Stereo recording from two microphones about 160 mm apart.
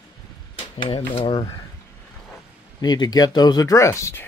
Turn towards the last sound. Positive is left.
turn(degrees=15)  # may be behind; listen again after turning